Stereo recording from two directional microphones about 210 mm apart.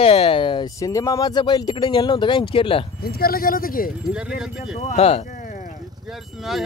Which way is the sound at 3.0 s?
45° left (ahead or behind).